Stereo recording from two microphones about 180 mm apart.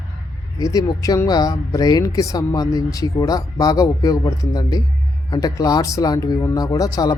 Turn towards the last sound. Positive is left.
turn(degrees=20)  # may be behind; listen again after turning